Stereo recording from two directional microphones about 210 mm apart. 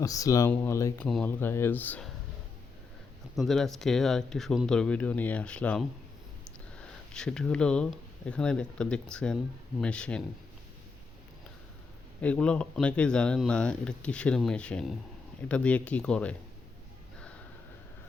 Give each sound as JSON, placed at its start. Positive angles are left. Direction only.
{"t": 0.0, "sound": "speech", "side_deg": 15}
{"t": 3.3, "sound": "speech", "side_deg": 0}
{"t": 12.2, "sound": "speech", "side_deg": 5}